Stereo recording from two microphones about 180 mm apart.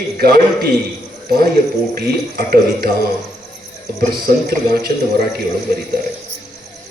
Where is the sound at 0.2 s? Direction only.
55° right (ahead or behind).